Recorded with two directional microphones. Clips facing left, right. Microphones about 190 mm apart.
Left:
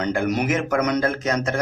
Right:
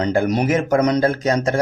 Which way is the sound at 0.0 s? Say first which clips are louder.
Right 4 dB; 35° right (ahead or behind).